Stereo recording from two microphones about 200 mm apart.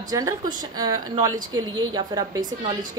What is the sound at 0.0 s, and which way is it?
A woman's voice, 20° right (ahead or behind).